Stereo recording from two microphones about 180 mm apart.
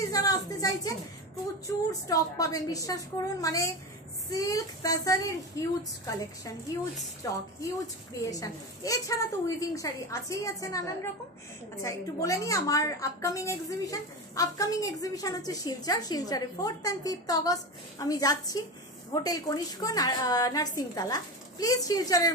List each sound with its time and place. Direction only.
0.0 s a sound: 20° left (ahead or behind)
1.7 s a woman's voice: 20° left (ahead or behind)
11.8 s a woman's voice: 20° left (ahead or behind)